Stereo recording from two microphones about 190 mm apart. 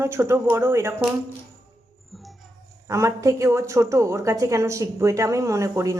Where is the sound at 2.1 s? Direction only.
Centre (ahead or behind).